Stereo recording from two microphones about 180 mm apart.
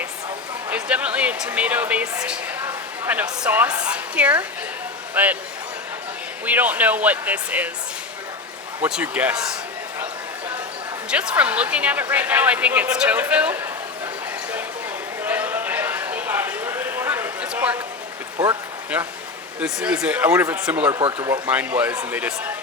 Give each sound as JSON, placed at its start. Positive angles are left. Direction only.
{"t": 0.7, "sound": "a woman's voice", "side_deg": -5}
{"t": 6.4, "sound": "speech", "side_deg": -10}
{"t": 8.8, "sound": "speech", "side_deg": -5}
{"t": 11.1, "sound": "speech", "side_deg": -5}
{"t": 15.2, "sound": "clip-clop", "side_deg": -10}
{"t": 18.9, "sound": "speech", "side_deg": -5}
{"t": 20.9, "sound": "speech", "side_deg": -25}
{"t": 21.4, "sound": "speech", "side_deg": -10}